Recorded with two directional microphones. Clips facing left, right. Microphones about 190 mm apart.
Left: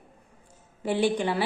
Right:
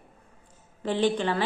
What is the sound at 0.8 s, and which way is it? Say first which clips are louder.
Speech: even; 10° left (ahead or behind).